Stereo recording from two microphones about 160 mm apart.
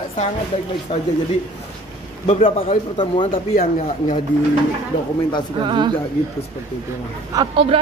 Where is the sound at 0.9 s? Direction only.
35° left (ahead or behind).